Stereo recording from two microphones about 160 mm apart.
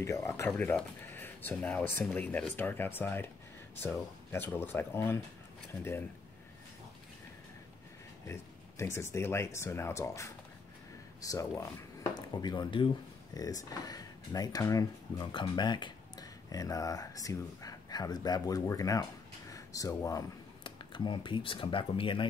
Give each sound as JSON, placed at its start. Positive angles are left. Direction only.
{"t": 0.0, "sound": "speech", "side_deg": 20}
{"t": 0.5, "sound": "speech", "side_deg": 5}
{"t": 8.3, "sound": "speech", "side_deg": 15}